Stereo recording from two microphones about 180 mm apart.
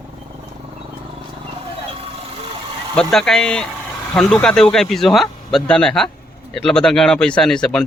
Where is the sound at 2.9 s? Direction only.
5° left (ahead or behind).